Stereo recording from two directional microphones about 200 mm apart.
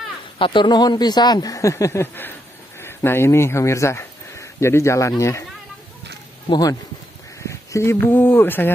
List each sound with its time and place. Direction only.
0.4 s speech: 25° left (ahead or behind)
6.5 s speech: 20° left (ahead or behind)